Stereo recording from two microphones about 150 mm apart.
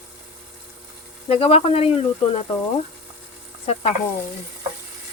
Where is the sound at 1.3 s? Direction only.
40° left (ahead or behind).